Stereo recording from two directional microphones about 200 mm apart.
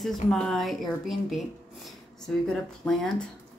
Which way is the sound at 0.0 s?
Centre (ahead or behind).